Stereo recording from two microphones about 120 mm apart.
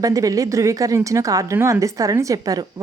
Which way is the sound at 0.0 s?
30° right (ahead or behind).